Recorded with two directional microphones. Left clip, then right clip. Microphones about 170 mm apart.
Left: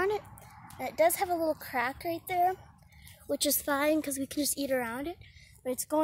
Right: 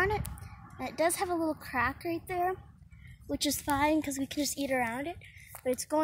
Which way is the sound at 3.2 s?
45° left (ahead or behind).